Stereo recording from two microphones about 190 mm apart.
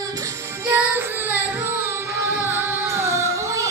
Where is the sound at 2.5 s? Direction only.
10° right (ahead or behind).